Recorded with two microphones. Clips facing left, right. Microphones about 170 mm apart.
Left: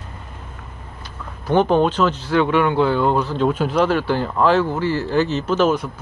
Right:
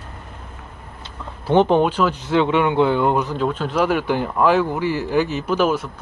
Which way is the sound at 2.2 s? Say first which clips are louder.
Even; 20° right (ahead or behind).